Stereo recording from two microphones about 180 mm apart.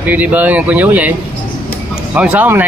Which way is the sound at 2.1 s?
10° right (ahead or behind).